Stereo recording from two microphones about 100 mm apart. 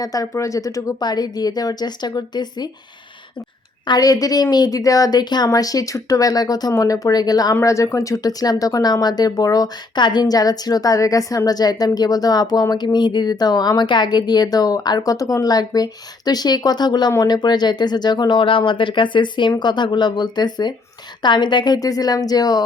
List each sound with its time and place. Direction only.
0.0 s speech: 35° left (ahead or behind)
3.8 s speech: 40° left (ahead or behind)
7.6 s speech: 30° left (ahead or behind)